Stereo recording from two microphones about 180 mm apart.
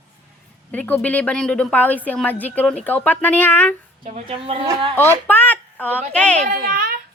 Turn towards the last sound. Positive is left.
turn(degrees=-45)  # may be behind; listen again after turning